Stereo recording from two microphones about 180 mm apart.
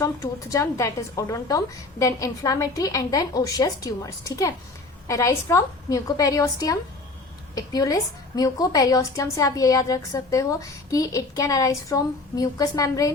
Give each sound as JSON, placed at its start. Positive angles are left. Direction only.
{"t": 0.0, "sound": "a woman's voice", "side_deg": 20}